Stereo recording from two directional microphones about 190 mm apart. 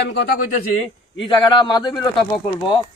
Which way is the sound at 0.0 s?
60° left (ahead or behind).